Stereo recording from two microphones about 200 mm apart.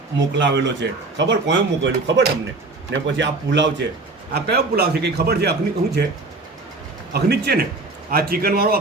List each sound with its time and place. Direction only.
0.3 s a man's voice: 65° right (ahead or behind)
7.1 s a man's voice: 50° right (ahead or behind)